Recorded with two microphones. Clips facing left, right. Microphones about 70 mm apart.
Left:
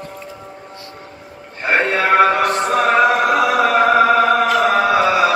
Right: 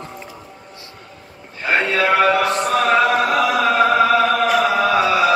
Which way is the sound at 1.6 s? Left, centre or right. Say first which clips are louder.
Left 1 dB; left.